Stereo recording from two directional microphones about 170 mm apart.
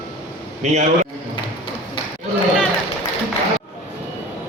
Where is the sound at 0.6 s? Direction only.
45° right (ahead or behind).